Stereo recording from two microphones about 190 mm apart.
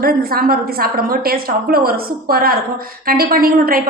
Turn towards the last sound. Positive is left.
turn(degrees=-50)  # may be behind; listen again after turning